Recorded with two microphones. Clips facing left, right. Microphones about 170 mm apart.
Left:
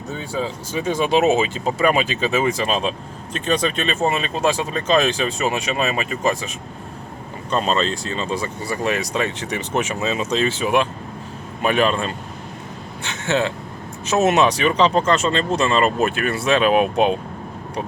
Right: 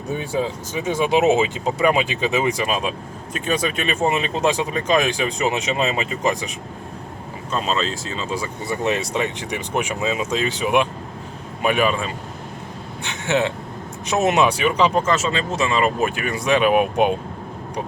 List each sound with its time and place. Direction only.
0.1 s speech: 15° right (ahead or behind)
8.1 s speech: 10° right (ahead or behind)
8.6 s speech: 20° right (ahead or behind)